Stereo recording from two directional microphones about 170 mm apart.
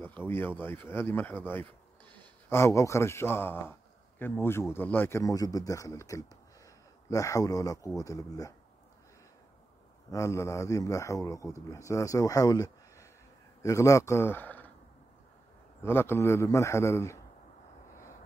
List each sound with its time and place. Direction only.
0.0 s a man's voice: 10° left (ahead or behind)
10.1 s a man's voice: 15° left (ahead or behind)
15.8 s speech: 15° left (ahead or behind)